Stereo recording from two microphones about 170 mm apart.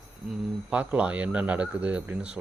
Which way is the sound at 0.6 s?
10° right (ahead or behind).